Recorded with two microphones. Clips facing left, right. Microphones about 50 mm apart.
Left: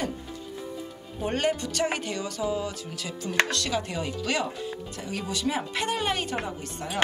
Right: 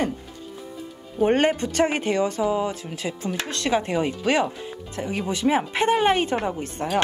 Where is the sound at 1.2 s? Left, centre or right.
Right.